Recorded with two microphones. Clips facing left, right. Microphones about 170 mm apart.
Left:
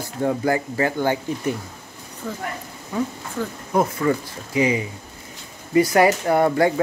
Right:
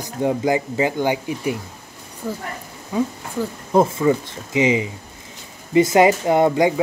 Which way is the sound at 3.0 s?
20° right (ahead or behind).